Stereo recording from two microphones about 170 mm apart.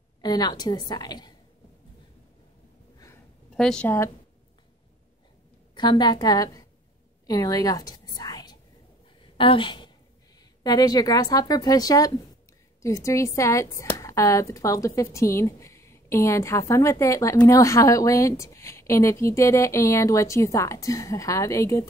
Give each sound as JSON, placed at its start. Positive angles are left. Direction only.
{"t": 0.2, "sound": "a woman's voice", "side_deg": 25}
{"t": 3.5, "sound": "speech", "side_deg": 5}
{"t": 5.8, "sound": "a woman's voice", "side_deg": 25}
{"t": 7.2, "sound": "whispering", "side_deg": 20}
{"t": 9.2, "sound": "a sound", "side_deg": 30}
{"t": 10.6, "sound": "a woman's voice", "side_deg": 25}